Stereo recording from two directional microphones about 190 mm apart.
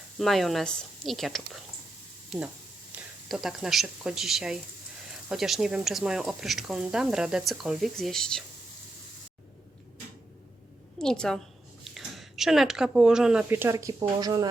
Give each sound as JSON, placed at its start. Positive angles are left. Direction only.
{"t": 0.2, "sound": "speech", "side_deg": 0}
{"t": 2.9, "sound": "a sound", "side_deg": -10}
{"t": 3.2, "sound": "speech", "side_deg": -5}
{"t": 11.0, "sound": "speech", "side_deg": 5}